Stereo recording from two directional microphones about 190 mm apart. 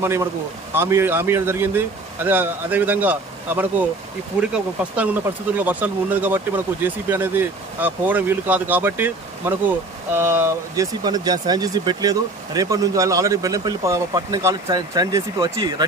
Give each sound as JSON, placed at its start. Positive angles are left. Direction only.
{"t": 0.0, "sound": "speech", "side_deg": -15}